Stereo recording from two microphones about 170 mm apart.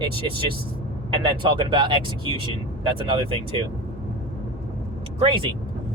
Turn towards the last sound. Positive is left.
turn(degrees=-30)  # may be behind; listen again after turning